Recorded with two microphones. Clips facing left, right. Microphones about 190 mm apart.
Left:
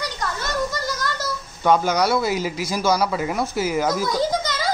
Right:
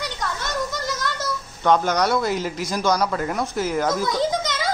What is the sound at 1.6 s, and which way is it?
Speech, 5° left (ahead or behind).